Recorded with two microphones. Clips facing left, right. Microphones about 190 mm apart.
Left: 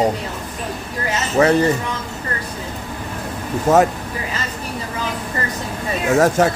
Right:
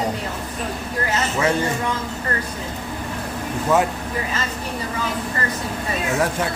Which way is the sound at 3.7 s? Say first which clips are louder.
Left 5 dB; 40° left (ahead or behind).